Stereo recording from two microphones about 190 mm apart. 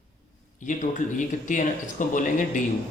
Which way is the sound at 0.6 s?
40° left (ahead or behind).